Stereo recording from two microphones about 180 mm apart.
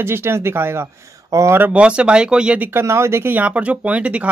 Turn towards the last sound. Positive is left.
turn(degrees=-5)  # may be behind; listen again after turning